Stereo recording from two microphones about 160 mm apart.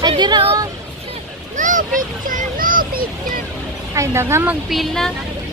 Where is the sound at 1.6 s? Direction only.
55° right (ahead or behind).